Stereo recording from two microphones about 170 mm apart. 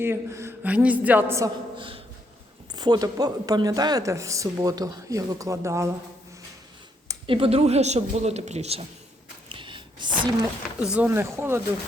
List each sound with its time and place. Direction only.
0.0 s a woman's voice: 15° right (ahead or behind)
2.7 s speech: 25° right (ahead or behind)
7.3 s speech: 30° right (ahead or behind)
9.5 s a sound: 30° right (ahead or behind)
10.8 s a woman's voice: 5° right (ahead or behind)